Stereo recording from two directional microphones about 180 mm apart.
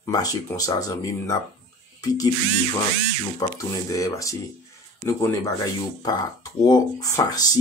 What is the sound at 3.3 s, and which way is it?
Speech, 20° left (ahead or behind).